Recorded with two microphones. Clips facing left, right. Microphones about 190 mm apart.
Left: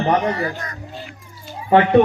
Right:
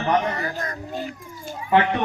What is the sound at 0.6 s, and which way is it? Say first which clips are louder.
Cat: right 4 dB; 45° right (ahead or behind).